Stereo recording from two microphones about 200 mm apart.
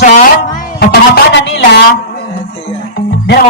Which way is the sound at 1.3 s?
60° left (ahead or behind).